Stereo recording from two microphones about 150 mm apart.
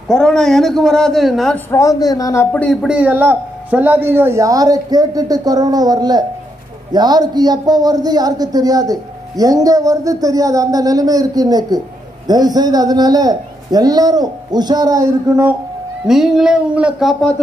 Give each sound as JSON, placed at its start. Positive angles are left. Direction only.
{"t": 0.1, "sound": "a man's voice", "side_deg": 5}
{"t": 1.7, "sound": "a man's voice", "side_deg": 20}
{"t": 2.5, "sound": "speech", "side_deg": 5}
{"t": 16.1, "sound": "a man's voice", "side_deg": 0}